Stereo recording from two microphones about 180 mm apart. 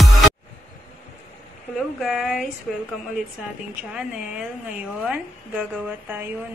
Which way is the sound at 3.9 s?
5° right (ahead or behind).